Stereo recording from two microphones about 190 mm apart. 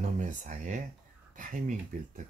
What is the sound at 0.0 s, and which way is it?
Speech, 40° right (ahead or behind).